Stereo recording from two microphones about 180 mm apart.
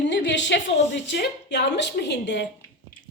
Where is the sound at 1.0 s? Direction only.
70° left (ahead or behind).